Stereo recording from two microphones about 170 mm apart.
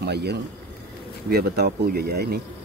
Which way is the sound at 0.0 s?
80° right.